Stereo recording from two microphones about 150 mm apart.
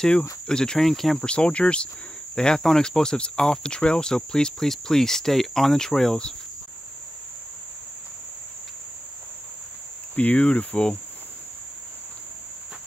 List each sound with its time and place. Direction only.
0.5 s speech: 5° left (ahead or behind)
10.1 s cricket: 10° left (ahead or behind)